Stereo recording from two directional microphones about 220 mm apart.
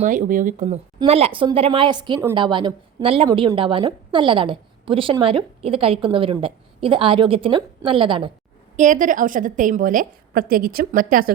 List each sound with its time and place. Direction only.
0.0 s a woman's voice: 35° right (ahead or behind)
8.7 s a woman's voice: 35° right (ahead or behind)